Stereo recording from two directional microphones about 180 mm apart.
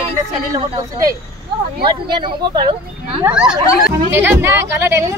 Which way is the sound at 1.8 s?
25° right (ahead or behind).